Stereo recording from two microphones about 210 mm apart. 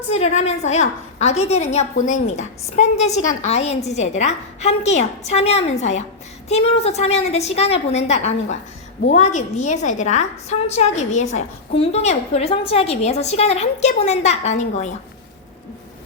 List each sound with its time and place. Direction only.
0.1 s a woman's voice: 30° left (ahead or behind)